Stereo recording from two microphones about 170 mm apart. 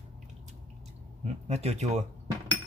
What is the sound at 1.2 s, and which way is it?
Speech, 40° right (ahead or behind).